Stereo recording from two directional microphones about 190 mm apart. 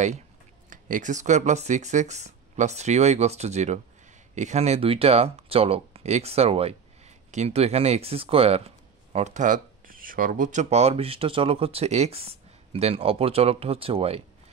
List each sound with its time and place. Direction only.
0.7 s speech: 45° right (ahead or behind)